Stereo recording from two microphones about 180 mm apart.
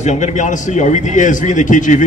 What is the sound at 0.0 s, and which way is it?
A man's voice, 40° left (ahead or behind).